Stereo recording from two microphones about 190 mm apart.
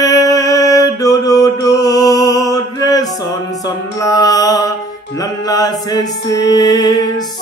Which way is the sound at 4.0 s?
20° left (ahead or behind).